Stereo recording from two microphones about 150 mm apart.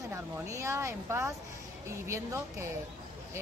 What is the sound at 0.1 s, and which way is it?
Speech, 20° right (ahead or behind).